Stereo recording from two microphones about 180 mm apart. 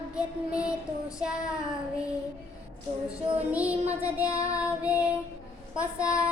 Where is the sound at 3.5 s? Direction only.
10° right (ahead or behind).